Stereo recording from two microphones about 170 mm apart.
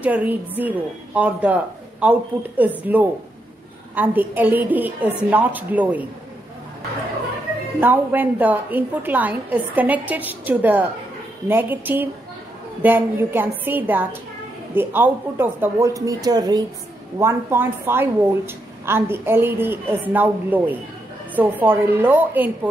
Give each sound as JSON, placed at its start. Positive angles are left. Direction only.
{"t": 0.0, "sound": "a woman's voice", "side_deg": -10}
{"t": 7.8, "sound": "a woman's voice", "side_deg": -10}